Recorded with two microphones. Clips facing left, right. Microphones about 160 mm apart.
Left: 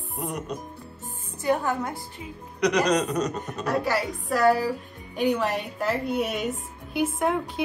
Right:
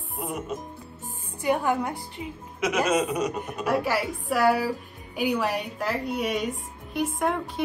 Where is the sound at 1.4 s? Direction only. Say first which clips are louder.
Right 1 dB; 15° right (ahead or behind).